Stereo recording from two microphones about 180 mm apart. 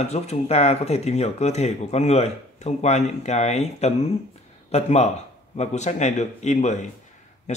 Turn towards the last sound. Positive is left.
turn(degrees=40)  # may be behind; listen again after turning